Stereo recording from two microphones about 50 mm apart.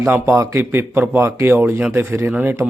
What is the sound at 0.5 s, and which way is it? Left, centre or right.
Speech, right.